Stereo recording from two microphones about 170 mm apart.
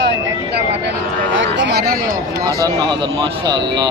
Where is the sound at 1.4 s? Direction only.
90° right; by 2.6 s 60° right (ahead or behind).